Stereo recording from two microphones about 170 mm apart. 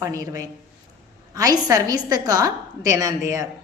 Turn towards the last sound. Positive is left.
turn(degrees=-20)  # may be behind; listen again after turning